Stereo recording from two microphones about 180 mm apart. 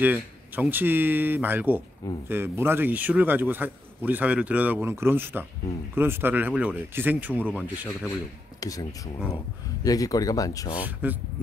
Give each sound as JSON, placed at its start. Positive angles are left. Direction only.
{"t": 0.0, "sound": "speech", "side_deg": -10}
{"t": 8.5, "sound": "speech", "side_deg": 20}
{"t": 10.7, "sound": "speech", "side_deg": -10}